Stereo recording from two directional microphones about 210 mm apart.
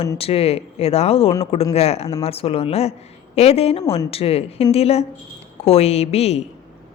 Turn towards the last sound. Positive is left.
turn(degrees=30)  # may be behind; listen again after turning